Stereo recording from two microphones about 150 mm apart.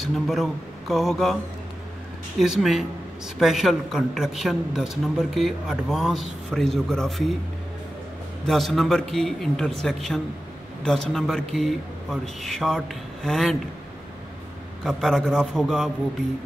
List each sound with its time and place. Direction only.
0.0 s a woman's voice: centre (ahead or behind)
8.5 s a woman's voice: centre (ahead or behind)
14.8 s a woman's voice: centre (ahead or behind)